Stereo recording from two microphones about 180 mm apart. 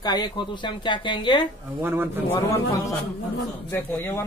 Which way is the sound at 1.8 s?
10° right (ahead or behind).